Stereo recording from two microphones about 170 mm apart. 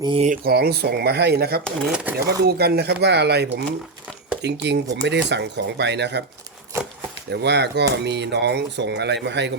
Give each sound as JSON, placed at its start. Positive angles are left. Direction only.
{"t": 0.0, "sound": "speech", "side_deg": -30}
{"t": 0.3, "sound": "speech", "side_deg": -65}
{"t": 1.6, "sound": "speech", "side_deg": -5}
{"t": 2.4, "sound": "speech", "side_deg": -70}
{"t": 4.4, "sound": "speech", "side_deg": -90}
{"t": 6.7, "sound": "speech", "side_deg": -15}
{"t": 7.3, "sound": "speech", "side_deg": -90}